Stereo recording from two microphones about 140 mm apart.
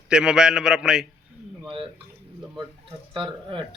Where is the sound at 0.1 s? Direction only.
5° right (ahead or behind).